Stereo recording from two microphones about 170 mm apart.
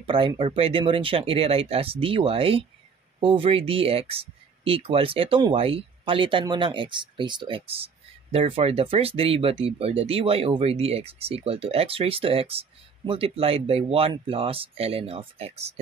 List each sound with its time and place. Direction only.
0.0 s speech: 30° right (ahead or behind)